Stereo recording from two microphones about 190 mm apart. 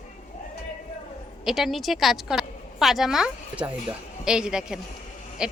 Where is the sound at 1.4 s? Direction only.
Centre (ahead or behind).